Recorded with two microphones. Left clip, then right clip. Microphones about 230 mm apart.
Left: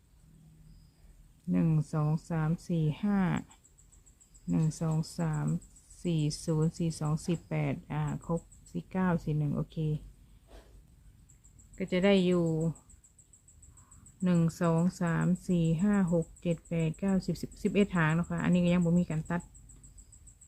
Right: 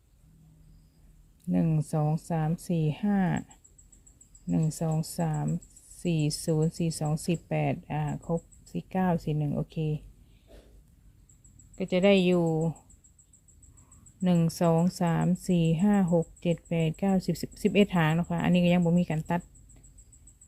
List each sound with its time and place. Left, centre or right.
1.5 s speech: centre
4.4 s speech: centre
11.8 s speech: centre
14.2 s speech: centre
16.0 s speech: centre
16.5 s speech: centre